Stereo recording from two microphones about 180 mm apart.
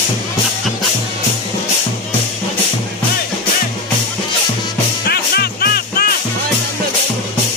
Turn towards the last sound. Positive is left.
turn(degrees=60)  # may be behind; listen again after turning